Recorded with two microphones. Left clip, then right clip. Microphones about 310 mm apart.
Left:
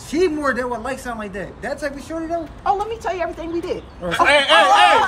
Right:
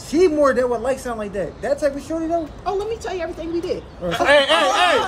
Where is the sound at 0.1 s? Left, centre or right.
Centre.